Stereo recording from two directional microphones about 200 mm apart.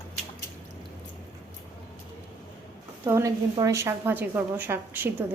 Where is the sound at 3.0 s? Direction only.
15° right (ahead or behind).